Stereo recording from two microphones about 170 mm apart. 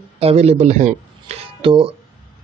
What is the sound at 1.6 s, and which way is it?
Speech, 30° right (ahead or behind).